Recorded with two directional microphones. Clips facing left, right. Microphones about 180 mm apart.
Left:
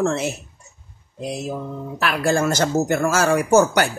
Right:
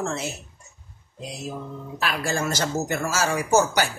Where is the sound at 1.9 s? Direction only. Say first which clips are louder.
Left 6 dB; 60° left (ahead or behind).